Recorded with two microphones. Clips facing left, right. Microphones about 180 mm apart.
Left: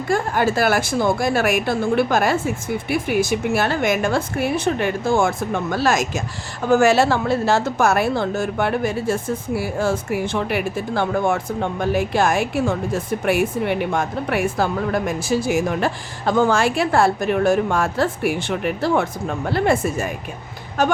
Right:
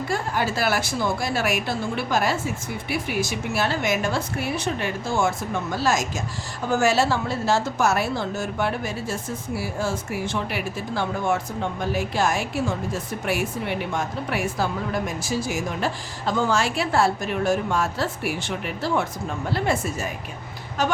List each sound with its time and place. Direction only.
0.1 s a woman's voice: 50° left (ahead or behind)
5.7 s a woman's voice: 65° left (ahead or behind)